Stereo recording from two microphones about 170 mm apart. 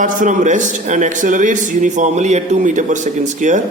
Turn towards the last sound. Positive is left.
turn(degrees=-45)  # may be behind; listen again after turning